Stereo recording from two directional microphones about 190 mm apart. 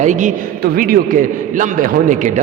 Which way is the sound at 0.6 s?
50° right (ahead or behind).